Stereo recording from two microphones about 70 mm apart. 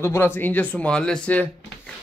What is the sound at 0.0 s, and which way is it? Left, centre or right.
Speech, left.